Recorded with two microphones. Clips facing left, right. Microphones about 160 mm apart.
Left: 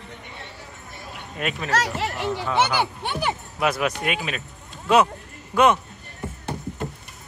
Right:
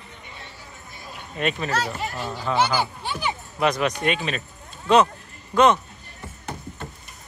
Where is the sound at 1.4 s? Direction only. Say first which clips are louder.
Right 3 dB; 5° left (ahead or behind).